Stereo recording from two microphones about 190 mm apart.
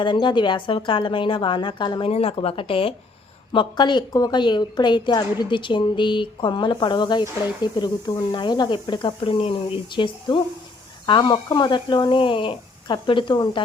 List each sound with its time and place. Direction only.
0.0 s a woman's voice: 25° left (ahead or behind)